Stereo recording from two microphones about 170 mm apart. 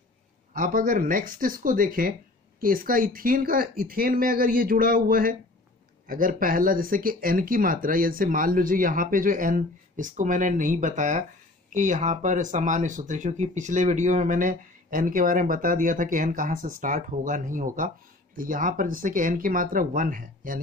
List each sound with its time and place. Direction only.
0.5 s speech: 55° right (ahead or behind)